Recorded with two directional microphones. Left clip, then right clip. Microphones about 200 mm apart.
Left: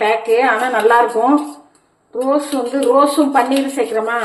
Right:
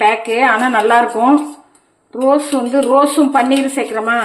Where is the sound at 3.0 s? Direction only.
45° right (ahead or behind).